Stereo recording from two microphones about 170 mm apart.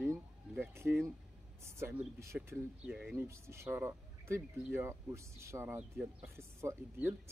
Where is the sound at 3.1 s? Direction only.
15° right (ahead or behind).